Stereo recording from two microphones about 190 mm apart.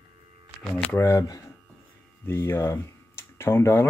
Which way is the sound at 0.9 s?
15° left (ahead or behind).